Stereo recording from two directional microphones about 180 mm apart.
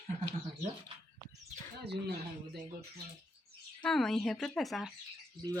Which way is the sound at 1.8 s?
65° right (ahead or behind).